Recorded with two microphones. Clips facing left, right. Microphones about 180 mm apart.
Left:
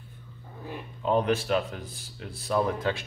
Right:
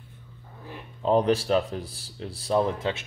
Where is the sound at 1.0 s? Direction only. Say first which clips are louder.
Right 3 dB; 35° right (ahead or behind).